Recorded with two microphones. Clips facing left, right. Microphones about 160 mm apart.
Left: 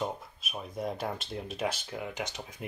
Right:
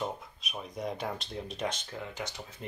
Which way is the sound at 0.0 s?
5° left (ahead or behind).